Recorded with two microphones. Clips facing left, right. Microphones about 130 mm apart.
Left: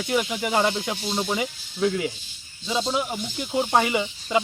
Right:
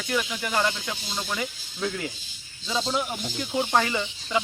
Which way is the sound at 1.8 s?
5° left (ahead or behind).